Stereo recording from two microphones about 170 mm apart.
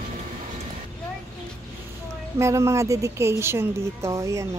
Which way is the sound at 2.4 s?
15° right (ahead or behind).